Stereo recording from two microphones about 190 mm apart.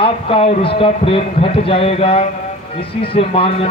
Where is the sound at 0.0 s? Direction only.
30° left (ahead or behind).